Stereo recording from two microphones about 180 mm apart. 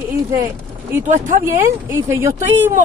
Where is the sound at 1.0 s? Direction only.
45° right (ahead or behind).